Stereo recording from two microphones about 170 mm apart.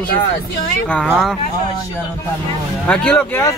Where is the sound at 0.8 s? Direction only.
5° left (ahead or behind).